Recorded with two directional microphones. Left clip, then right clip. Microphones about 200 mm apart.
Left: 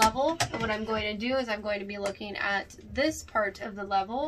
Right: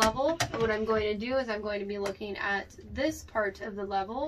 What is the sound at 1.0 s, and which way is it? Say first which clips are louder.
Speech: even; 35° left (ahead or behind).